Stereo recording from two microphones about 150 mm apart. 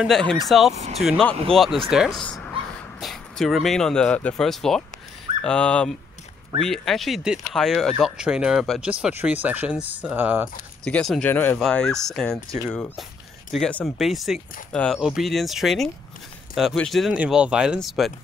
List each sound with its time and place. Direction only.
0.0 s speech: 5° left (ahead or behind)
0.7 s speech: 45° right (ahead or behind)
1.0 s speech: centre (ahead or behind); by 10.5 s 15° right (ahead or behind)
10.8 s speech: 5° left (ahead or behind)
13.5 s speech: 5° left (ahead or behind)